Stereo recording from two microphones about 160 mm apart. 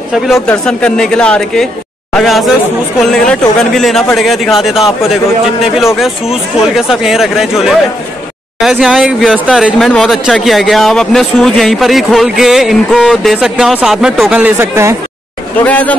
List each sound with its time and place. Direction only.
0.3 s speech: 5° left (ahead or behind)
5.9 s speech: centre (ahead or behind)
14.4 s speech: 15° right (ahead or behind)
15.6 s speech: 10° left (ahead or behind)